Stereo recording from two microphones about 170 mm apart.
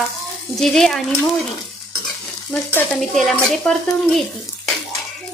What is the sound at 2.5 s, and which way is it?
Stir, 10° left (ahead or behind).